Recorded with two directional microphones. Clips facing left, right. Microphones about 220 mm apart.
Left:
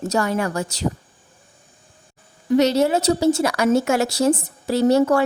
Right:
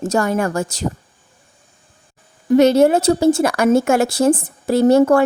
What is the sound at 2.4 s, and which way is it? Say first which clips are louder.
A woman's voice: right 5 dB; 50° right (ahead or behind).